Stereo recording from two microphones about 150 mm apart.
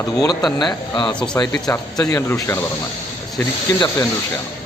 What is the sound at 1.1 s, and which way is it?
Speech, 5° left (ahead or behind).